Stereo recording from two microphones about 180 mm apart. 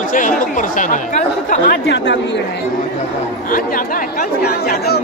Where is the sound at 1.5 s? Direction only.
60° left (ahead or behind); by 2.4 s 80° left.